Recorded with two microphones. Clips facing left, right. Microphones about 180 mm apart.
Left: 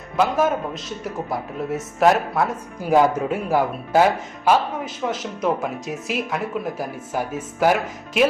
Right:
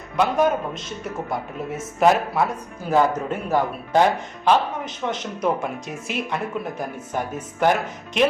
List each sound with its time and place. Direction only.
0.2 s speech: centre (ahead or behind)
2.9 s speech: 15° left (ahead or behind)